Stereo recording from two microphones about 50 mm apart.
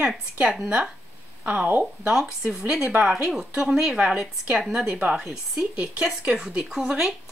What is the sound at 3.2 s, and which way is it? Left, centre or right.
Speech, centre.